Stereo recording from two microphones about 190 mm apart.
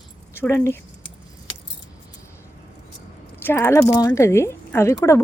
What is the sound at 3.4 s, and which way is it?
A woman's voice, 15° left (ahead or behind).